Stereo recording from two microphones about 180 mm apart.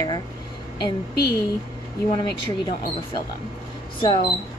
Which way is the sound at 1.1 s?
65° left (ahead or behind).